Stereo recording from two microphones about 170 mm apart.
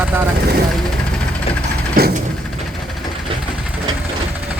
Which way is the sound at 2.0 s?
65° right (ahead or behind).